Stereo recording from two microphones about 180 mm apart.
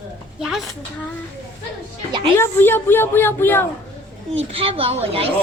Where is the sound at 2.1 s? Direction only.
25° right (ahead or behind).